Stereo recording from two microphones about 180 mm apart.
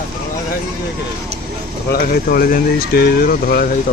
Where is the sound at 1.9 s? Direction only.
55° left (ahead or behind).